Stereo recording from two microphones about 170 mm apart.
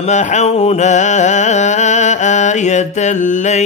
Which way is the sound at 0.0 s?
45° left (ahead or behind).